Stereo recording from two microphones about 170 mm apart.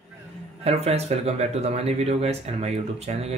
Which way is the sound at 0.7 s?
35° right (ahead or behind).